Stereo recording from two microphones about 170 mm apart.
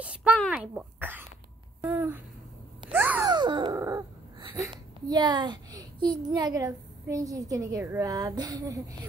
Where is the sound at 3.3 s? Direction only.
25° right (ahead or behind).